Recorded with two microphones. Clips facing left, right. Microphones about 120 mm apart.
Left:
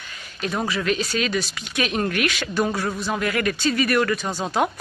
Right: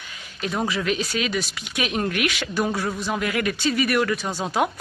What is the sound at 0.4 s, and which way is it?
Speech, 15° right (ahead or behind).